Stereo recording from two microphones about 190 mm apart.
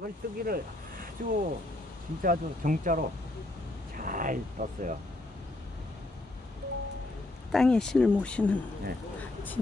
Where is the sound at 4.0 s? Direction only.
45° right (ahead or behind).